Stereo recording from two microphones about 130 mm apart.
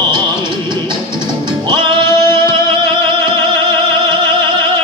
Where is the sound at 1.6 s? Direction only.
35° right (ahead or behind).